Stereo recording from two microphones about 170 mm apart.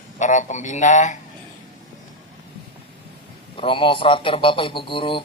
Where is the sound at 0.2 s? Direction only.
45° left (ahead or behind).